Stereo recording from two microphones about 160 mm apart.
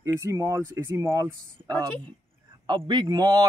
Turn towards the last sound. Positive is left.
turn(degrees=-25)  # may be behind; listen again after turning